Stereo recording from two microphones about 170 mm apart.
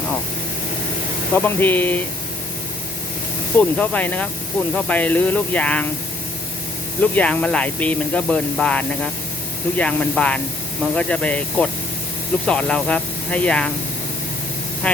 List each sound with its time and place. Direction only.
1.3 s speech: 10° left (ahead or behind)
3.6 s speech: 10° left (ahead or behind)
7.0 s speech: 10° left (ahead or behind)
14.8 s speech: 5° left (ahead or behind)